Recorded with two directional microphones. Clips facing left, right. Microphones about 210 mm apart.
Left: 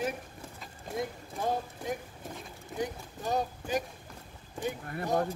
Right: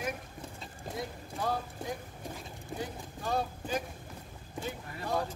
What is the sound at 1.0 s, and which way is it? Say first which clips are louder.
Speech: left 3 dB; 20° left (ahead or behind).